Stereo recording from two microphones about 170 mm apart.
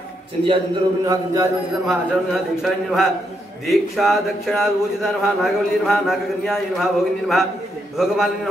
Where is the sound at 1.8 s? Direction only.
Centre (ahead or behind).